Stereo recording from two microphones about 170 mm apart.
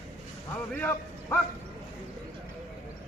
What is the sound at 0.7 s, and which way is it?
Speech, 10° left (ahead or behind).